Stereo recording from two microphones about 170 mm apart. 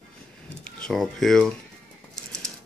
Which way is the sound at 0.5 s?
5° left (ahead or behind).